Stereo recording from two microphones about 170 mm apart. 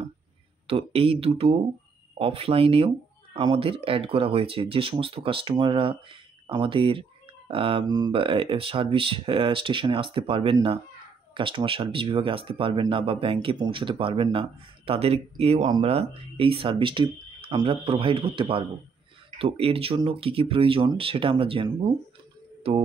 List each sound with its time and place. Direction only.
0.7 s speech: 35° right (ahead or behind)